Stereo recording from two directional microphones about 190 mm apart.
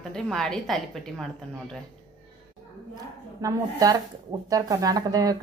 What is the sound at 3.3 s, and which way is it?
Speech, 15° right (ahead or behind).